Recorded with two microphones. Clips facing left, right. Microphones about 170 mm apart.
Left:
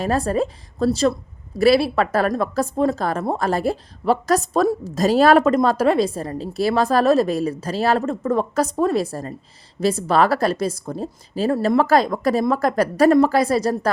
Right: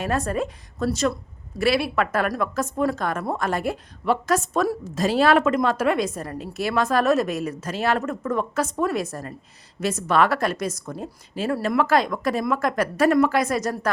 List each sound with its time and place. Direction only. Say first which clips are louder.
0.0 s speech: left 4 dB; 35° left (ahead or behind)